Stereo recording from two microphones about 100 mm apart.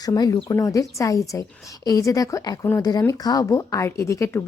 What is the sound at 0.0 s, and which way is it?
Speech, 35° left (ahead or behind).